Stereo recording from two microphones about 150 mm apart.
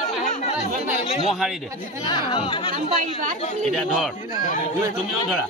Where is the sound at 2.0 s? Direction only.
35° left (ahead or behind).